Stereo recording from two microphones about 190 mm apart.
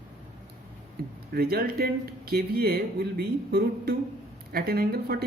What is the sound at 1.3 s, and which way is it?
Speech, 55° right (ahead or behind).